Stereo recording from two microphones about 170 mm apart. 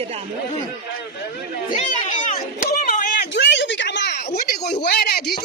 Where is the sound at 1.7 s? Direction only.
45° left (ahead or behind).